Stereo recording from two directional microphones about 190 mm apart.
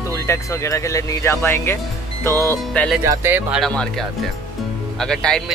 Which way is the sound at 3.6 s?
5° left (ahead or behind).